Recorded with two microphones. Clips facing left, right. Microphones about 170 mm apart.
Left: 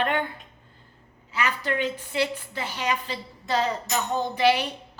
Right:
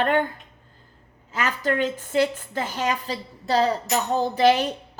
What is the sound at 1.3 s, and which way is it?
A woman's voice, 45° right (ahead or behind).